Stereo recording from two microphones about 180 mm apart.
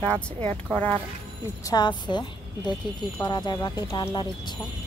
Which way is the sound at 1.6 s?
20° left (ahead or behind).